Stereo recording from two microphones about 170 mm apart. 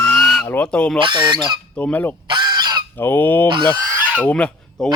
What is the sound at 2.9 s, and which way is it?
Goose, 10° left (ahead or behind).